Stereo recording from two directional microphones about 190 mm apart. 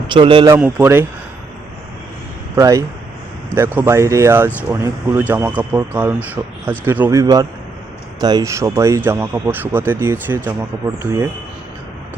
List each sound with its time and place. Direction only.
0.1 s a man's voice: 25° right (ahead or behind)
0.4 s speech: 10° right (ahead or behind)
2.6 s speech: 15° right (ahead or behind)